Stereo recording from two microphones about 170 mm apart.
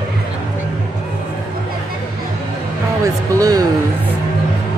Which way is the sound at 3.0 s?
20° right (ahead or behind).